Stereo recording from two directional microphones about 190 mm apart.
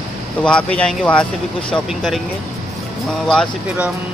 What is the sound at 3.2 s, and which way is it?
Speech, 5° left (ahead or behind).